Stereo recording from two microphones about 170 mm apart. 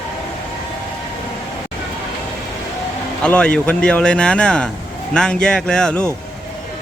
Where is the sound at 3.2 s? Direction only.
5° left (ahead or behind).